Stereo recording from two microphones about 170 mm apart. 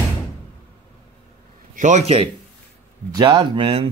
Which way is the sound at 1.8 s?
45° right (ahead or behind).